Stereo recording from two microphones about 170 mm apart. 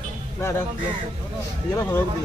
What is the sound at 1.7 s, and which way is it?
Speech, 15° left (ahead or behind).